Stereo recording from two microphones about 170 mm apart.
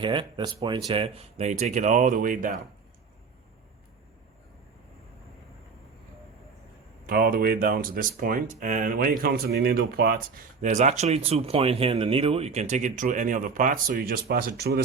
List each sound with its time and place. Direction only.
0.0 s speech: 30° right (ahead or behind); by 2.6 s 50° right (ahead or behind)
7.1 s speech: 60° right (ahead or behind)